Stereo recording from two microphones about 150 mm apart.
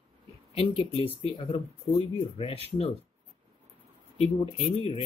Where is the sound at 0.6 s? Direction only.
40° left (ahead or behind).